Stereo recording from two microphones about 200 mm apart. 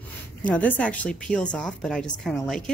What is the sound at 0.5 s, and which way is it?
A woman's voice, 5° left (ahead or behind).